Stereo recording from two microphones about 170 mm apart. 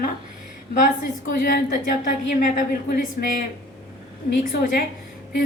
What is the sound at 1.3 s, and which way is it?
A woman's voice, 55° left (ahead or behind).